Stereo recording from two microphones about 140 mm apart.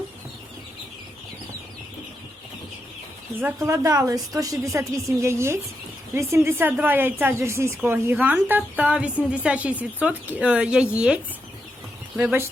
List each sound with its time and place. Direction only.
3.4 s a woman's voice: 20° right (ahead or behind)